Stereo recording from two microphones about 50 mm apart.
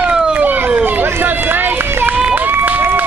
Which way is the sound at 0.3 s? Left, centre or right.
Right.